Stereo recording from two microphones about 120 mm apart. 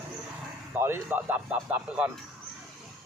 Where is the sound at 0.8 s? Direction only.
20° right (ahead or behind).